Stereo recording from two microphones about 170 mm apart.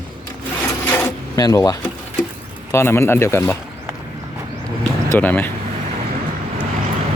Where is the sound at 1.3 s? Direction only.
20° left (ahead or behind).